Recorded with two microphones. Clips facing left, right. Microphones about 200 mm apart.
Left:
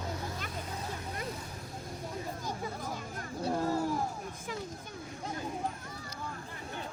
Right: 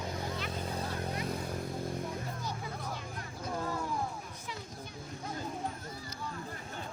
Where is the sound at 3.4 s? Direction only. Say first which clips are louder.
Left 6 dB; 35° left (ahead or behind).